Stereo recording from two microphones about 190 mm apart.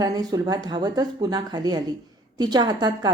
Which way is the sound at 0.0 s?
20° right (ahead or behind).